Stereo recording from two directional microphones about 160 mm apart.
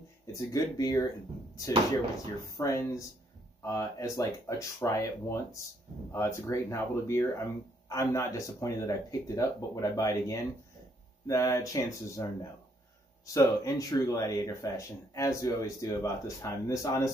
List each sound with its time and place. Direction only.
0.3 s speech: 20° left (ahead or behind)
2.5 s speech: 20° left (ahead or behind)